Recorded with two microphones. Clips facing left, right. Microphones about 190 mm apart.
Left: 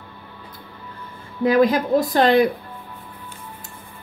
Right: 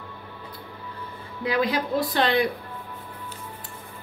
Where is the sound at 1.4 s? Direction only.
45° left (ahead or behind).